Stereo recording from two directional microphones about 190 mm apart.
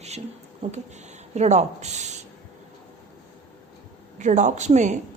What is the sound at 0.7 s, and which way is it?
Speech, 35° right (ahead or behind).